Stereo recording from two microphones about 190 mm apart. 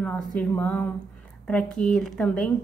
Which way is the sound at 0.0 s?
5° left (ahead or behind).